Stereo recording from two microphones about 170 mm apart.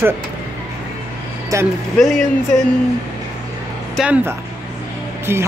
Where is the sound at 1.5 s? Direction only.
20° right (ahead or behind).